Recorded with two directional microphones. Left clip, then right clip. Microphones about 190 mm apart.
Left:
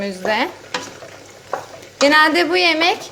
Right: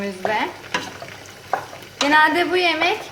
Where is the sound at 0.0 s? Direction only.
50° left (ahead or behind).